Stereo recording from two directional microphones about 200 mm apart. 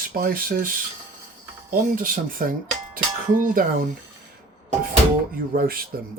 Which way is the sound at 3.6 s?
45° right (ahead or behind).